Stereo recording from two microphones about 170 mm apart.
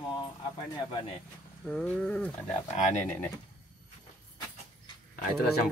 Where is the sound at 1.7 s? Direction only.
5° left (ahead or behind).